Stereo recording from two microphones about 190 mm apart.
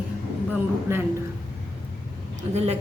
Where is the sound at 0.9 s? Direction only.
15° right (ahead or behind).